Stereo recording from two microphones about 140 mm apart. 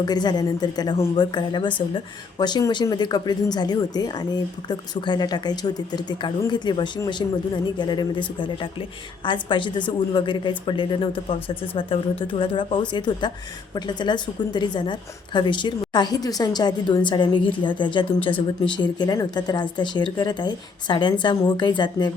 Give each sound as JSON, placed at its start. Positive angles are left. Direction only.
{"t": 0.0, "sound": "a woman's voice", "side_deg": 30}